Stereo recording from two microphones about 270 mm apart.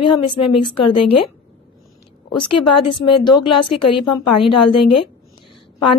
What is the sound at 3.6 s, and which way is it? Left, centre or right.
Speech, left.